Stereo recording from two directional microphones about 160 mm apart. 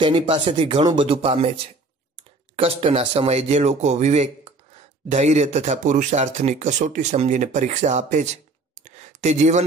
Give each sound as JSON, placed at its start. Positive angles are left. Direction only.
{"t": 0.0, "sound": "speech", "side_deg": -30}
{"t": 2.5, "sound": "speech", "side_deg": -35}